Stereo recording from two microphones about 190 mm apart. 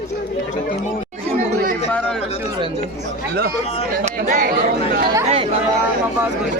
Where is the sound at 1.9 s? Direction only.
5° left (ahead or behind).